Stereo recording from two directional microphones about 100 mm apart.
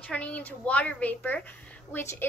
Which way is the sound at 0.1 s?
15° left (ahead or behind).